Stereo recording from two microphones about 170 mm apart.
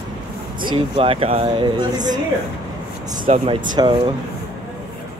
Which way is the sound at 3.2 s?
35° right (ahead or behind).